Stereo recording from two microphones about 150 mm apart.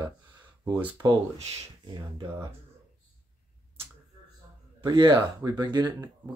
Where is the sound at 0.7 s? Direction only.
10° right (ahead or behind).